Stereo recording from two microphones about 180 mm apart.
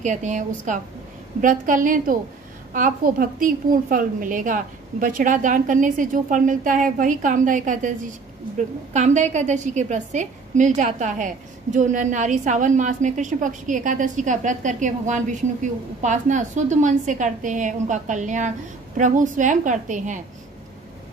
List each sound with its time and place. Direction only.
0.0 s a woman's voice: 40° right (ahead or behind)